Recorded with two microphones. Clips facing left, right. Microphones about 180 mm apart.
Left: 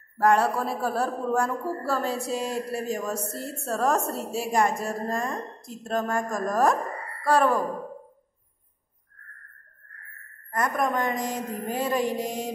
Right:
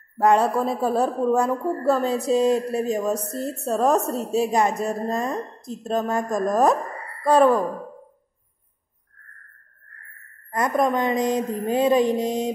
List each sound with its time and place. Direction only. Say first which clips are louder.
0.2 s a woman's voice: right 3 dB; 20° right (ahead or behind)
10.5 s a woman's voice: right 5 dB; 20° right (ahead or behind)